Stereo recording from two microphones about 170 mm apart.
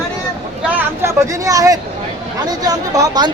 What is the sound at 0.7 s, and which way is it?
Speech, 15° right (ahead or behind).